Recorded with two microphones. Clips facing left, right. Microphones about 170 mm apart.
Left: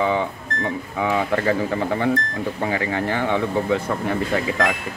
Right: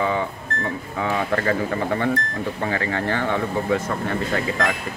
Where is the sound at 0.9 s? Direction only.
15° left (ahead or behind).